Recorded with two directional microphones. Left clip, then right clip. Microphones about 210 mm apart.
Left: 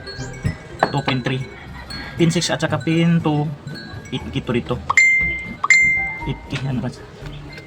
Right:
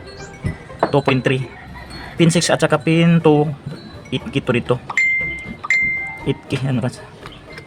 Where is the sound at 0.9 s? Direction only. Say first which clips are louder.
Right 6 dB; 45° right (ahead or behind).